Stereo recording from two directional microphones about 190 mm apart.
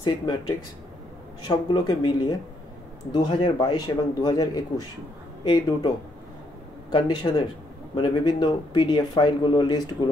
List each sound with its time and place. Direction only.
0.0 s speech: 20° left (ahead or behind)